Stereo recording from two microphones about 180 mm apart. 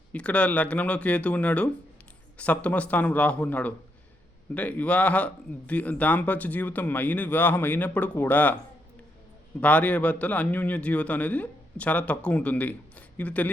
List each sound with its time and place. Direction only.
0.1 s speech: 5° left (ahead or behind)
9.6 s speech: 5° left (ahead or behind)